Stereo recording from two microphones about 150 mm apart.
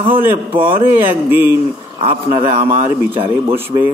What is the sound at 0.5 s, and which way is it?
Speech, 35° right (ahead or behind).